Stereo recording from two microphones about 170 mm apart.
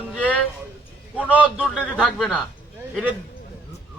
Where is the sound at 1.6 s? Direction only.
5° right (ahead or behind).